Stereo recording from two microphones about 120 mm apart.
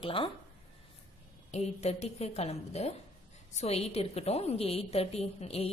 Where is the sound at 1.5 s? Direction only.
65° left (ahead or behind).